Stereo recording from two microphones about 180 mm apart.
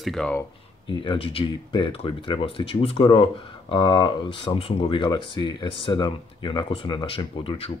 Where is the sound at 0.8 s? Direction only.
25° left (ahead or behind).